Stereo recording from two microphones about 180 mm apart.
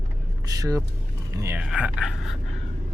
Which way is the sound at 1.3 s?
15° right (ahead or behind).